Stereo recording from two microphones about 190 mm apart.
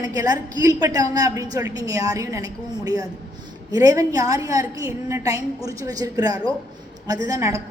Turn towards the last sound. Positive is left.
turn(degrees=-15)  # may be behind; listen again after turning